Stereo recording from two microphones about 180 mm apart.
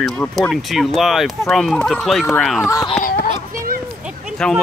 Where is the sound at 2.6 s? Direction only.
20° left (ahead or behind).